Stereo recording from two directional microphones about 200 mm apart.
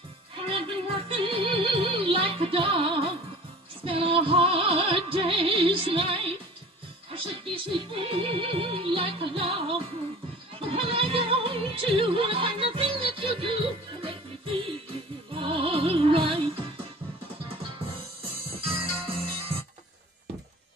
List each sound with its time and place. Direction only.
0.5 s music: 25° right (ahead or behind)
18.8 s music: 25° right (ahead or behind)